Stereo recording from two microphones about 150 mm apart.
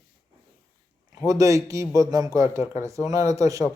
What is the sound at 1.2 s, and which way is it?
A man's voice, 20° right (ahead or behind).